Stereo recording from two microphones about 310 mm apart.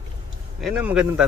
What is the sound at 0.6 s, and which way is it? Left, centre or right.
Speech, centre.